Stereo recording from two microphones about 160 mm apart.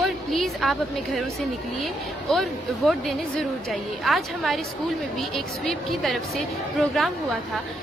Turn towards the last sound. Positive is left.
turn(degrees=0)  # may be behind; listen again after turning